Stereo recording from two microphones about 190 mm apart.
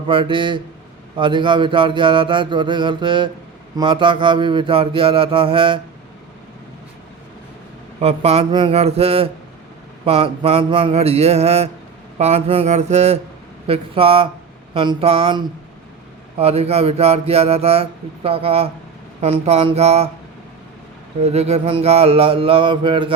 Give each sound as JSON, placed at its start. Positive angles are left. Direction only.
{"t": 0.1, "sound": "mantra", "side_deg": -25}
{"t": 8.0, "sound": "speech", "side_deg": -35}
{"t": 13.7, "sound": "mantra", "side_deg": -30}
{"t": 16.4, "sound": "speech", "side_deg": -30}
{"t": 21.2, "sound": "mantra", "side_deg": -35}